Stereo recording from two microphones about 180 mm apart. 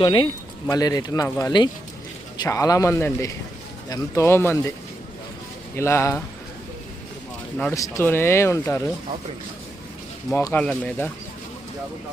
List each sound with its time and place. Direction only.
0.0 s speech: 25° left (ahead or behind)
5.7 s speech: 15° left (ahead or behind)
7.6 s speech: 15° left (ahead or behind)
10.3 s speech: 10° left (ahead or behind)